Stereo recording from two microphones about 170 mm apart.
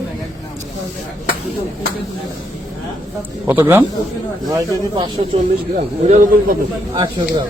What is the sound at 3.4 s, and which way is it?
Speech, 10° right (ahead or behind).